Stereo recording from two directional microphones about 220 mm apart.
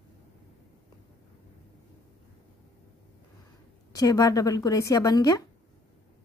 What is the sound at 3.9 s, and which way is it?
Speech, 15° left (ahead or behind).